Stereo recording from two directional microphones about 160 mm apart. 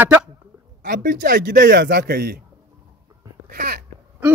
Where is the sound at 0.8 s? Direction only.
65° right (ahead or behind); by 2.4 s 85° right.